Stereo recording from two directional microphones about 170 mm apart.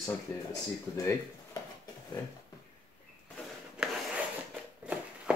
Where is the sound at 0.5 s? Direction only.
20° left (ahead or behind).